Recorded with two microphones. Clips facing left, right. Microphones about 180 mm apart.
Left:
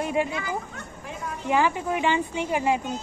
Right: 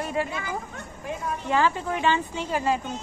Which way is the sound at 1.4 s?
15° left (ahead or behind).